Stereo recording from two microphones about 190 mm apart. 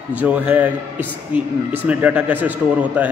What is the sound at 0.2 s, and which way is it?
A man's voice, 5° right (ahead or behind).